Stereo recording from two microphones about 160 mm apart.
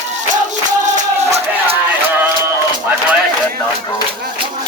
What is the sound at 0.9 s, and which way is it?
Music, 40° right (ahead or behind).